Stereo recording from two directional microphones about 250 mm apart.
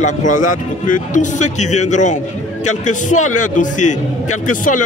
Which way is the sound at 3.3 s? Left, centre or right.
Left.